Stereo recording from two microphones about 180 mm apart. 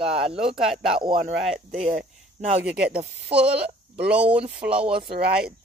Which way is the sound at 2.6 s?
5° right (ahead or behind).